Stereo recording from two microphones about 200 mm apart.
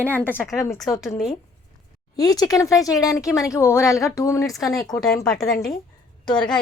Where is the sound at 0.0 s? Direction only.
10° left (ahead or behind).